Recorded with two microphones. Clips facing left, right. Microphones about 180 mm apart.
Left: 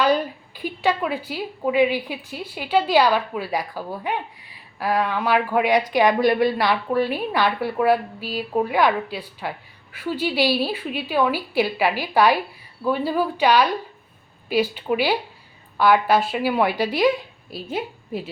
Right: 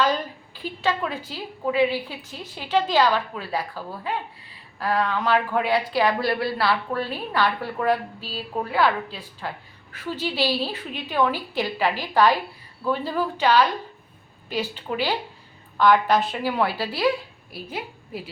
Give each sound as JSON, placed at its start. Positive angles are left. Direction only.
{"t": 0.0, "sound": "a woman's voice", "side_deg": 15}